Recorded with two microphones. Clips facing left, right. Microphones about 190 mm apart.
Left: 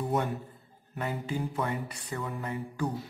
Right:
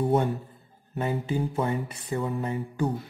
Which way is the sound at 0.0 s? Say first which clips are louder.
Right 6 dB; 30° right (ahead or behind).